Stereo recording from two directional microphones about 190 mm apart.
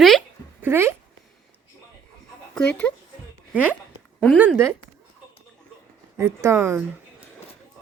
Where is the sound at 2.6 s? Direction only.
5° left (ahead or behind).